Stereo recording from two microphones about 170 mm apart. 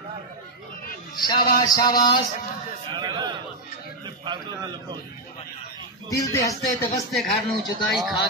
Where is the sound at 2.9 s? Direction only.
25° right (ahead or behind).